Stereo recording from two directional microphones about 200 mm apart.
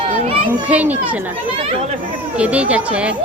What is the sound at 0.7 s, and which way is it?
Speech, 5° right (ahead or behind).